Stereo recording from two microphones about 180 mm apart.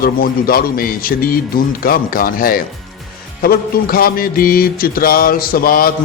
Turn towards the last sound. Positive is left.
turn(degrees=55)  # may be behind; listen again after turning